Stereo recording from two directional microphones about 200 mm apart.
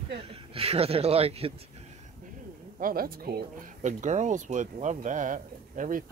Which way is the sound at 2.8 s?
45° right (ahead or behind).